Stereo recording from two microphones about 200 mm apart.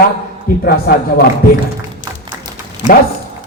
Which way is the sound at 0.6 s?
50° left (ahead or behind).